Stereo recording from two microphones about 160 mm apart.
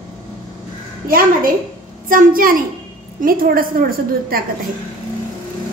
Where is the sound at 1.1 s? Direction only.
60° right (ahead or behind).